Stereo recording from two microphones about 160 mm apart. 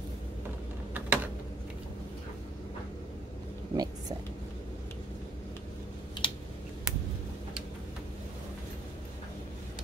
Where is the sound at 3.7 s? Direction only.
25° right (ahead or behind).